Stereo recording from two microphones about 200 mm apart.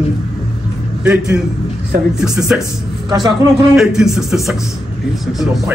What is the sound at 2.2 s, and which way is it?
Speech, 5° right (ahead or behind).